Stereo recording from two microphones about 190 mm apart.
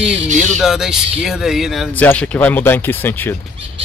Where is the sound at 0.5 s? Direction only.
Centre (ahead or behind).